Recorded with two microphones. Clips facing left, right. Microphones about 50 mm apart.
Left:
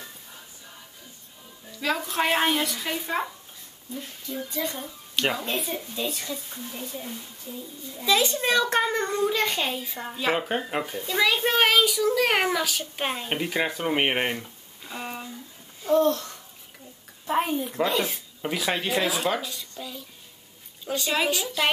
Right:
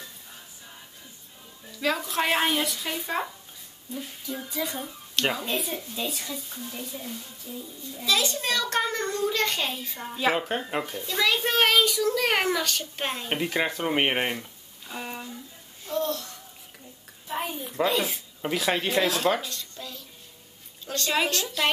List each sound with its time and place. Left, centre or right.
1.8 s a child's voice: centre
4.6 s a child's voice: centre
7.9 s a child's voice: centre
15.8 s a child's voice: left
17.3 s a child's voice: left
17.7 s a child's voice: centre